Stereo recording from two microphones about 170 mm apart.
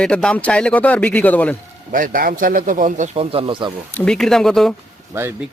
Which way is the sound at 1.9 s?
55° right (ahead or behind).